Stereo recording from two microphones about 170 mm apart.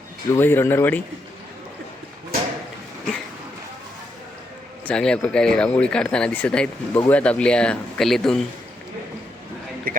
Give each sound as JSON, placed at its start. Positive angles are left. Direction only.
{"t": 0.3, "sound": "speech", "side_deg": 15}
{"t": 4.9, "sound": "speech", "side_deg": 5}
{"t": 9.9, "sound": "speech", "side_deg": -60}